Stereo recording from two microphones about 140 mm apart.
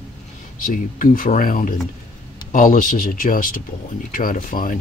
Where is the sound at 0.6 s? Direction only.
75° left (ahead or behind).